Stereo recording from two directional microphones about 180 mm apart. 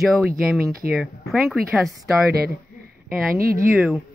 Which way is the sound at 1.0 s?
Centre (ahead or behind).